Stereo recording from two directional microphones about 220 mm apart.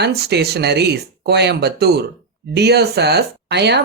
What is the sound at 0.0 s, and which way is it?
Speech, 50° right (ahead or behind).